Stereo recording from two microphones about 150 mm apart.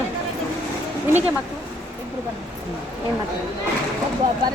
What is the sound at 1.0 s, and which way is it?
Speech, 15° right (ahead or behind).